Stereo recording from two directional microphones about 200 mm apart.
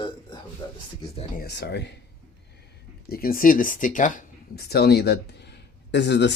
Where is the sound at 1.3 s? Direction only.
55° left (ahead or behind).